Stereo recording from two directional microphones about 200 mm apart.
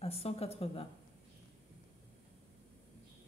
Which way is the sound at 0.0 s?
30° left (ahead or behind).